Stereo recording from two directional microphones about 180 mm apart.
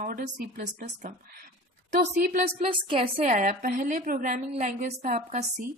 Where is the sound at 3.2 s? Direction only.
45° right (ahead or behind).